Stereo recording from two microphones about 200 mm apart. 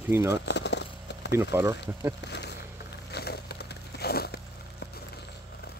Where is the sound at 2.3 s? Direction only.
55° left (ahead or behind).